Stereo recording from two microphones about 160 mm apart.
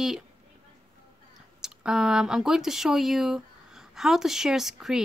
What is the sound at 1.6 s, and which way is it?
A woman's voice, 5° right (ahead or behind).